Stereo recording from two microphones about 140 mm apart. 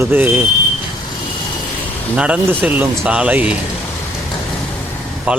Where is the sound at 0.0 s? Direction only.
15° right (ahead or behind).